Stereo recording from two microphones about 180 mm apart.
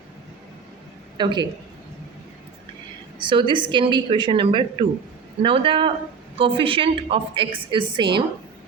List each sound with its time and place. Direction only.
1.1 s a woman's voice: 25° right (ahead or behind)
3.2 s a woman's voice: 25° right (ahead or behind)